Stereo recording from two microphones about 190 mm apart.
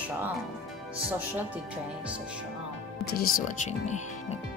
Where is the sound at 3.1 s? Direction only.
50° left (ahead or behind).